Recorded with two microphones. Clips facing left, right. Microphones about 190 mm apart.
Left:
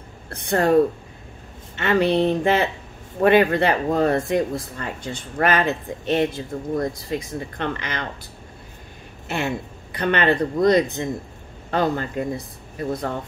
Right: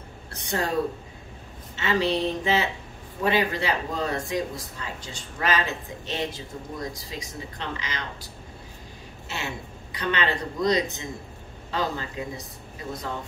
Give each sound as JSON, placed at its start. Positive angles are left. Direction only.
{"t": 0.3, "sound": "a sound", "side_deg": 55}
{"t": 1.8, "sound": "speech", "side_deg": 55}
{"t": 9.3, "sound": "speech", "side_deg": 55}